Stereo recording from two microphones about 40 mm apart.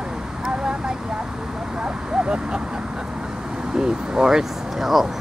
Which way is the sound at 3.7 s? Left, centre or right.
Centre.